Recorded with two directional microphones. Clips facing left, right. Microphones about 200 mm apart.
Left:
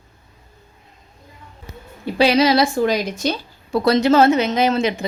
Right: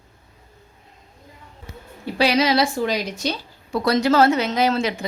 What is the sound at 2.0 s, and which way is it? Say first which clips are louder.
Speech: left 4 dB; 25° left (ahead or behind).